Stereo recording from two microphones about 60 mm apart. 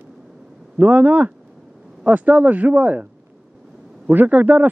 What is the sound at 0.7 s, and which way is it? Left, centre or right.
Speech, right.